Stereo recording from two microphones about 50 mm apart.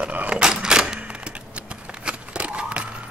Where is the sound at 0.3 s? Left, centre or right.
Centre.